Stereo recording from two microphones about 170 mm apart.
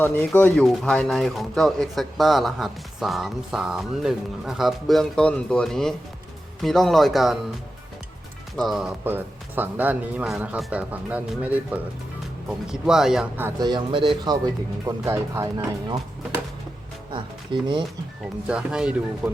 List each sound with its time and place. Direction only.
0.0 s speech: 10° left (ahead or behind)
8.5 s speech: centre (ahead or behind)
13.7 s speech: 25° right (ahead or behind)
17.1 s speech: 25° right (ahead or behind)
18.2 s speech: 5° right (ahead or behind)